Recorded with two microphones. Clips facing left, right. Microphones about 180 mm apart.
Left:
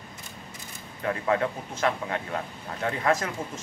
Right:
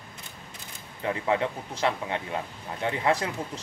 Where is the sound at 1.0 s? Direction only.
20° right (ahead or behind).